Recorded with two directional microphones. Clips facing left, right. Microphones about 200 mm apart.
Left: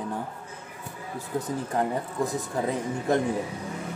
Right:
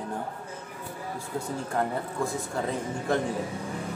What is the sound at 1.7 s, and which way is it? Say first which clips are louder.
A man's voice: left 2 dB; 15° left (ahead or behind).